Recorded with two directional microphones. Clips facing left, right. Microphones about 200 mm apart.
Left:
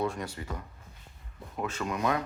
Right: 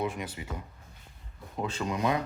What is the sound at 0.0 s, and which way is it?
Speech, 20° right (ahead or behind).